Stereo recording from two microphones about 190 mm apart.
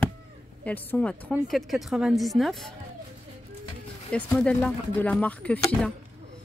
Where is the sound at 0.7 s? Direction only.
10° left (ahead or behind).